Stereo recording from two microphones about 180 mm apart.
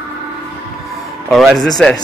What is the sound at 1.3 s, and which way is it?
Speech, centre (ahead or behind).